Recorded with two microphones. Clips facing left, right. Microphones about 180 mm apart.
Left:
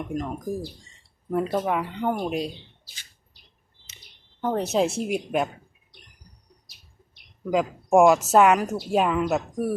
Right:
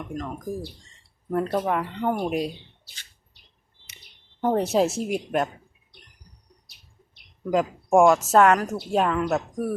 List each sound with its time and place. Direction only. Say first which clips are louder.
0.1 s speech: left 3 dB; 15° left (ahead or behind)
1.3 s a woman's voice: even; 5° left (ahead or behind)
4.4 s a woman's voice: right 3 dB; 15° right (ahead or behind)
4.7 s a woman's voice: right 1 dB; centre (ahead or behind)
7.5 s a woman's voice: even; centre (ahead or behind)